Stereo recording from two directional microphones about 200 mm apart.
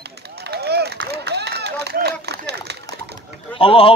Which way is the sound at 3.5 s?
25° left (ahead or behind).